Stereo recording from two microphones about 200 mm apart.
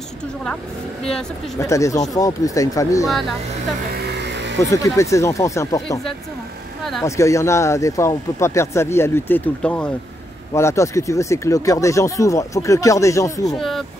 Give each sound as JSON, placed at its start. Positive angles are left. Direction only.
{"t": 1.6, "sound": "speech", "side_deg": 15}
{"t": 3.1, "sound": "speech", "side_deg": 0}
{"t": 4.0, "sound": "music", "side_deg": -60}
{"t": 4.6, "sound": "speech", "side_deg": 15}
{"t": 6.8, "sound": "speech", "side_deg": 0}
{"t": 7.1, "sound": "speech", "side_deg": 15}
{"t": 13.5, "sound": "speech", "side_deg": 0}